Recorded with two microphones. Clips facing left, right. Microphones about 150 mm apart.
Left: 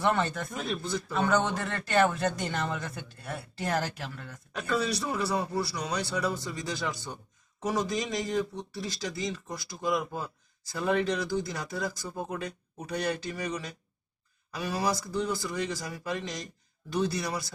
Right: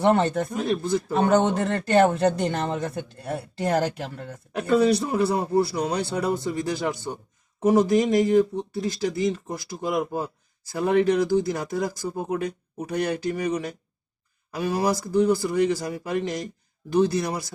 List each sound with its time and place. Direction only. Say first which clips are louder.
0.0 s speech: right 7 dB; 35° right (ahead or behind)
0.7 s speech: right 8 dB; 50° right (ahead or behind)
4.9 s speech: right 8 dB; 55° right (ahead or behind)